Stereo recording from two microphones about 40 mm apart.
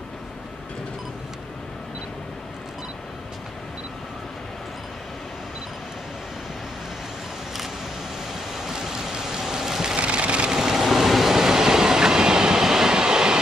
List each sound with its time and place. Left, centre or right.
8.5 s vehicle: centre
9.9 s vehicle: right
10.5 s train: centre